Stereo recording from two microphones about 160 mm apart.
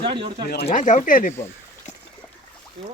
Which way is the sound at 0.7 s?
50° left (ahead or behind).